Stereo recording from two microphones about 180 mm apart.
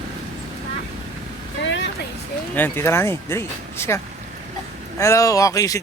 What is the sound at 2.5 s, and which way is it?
Speech, 10° left (ahead or behind).